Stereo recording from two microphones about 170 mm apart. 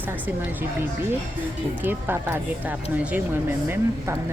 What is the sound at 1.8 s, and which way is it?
Speech, 10° right (ahead or behind).